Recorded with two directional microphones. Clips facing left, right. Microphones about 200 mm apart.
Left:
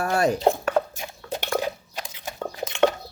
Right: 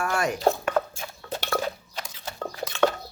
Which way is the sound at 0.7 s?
15° left (ahead or behind).